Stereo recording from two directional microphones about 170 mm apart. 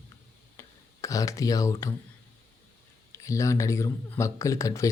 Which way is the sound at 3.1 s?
20° left (ahead or behind).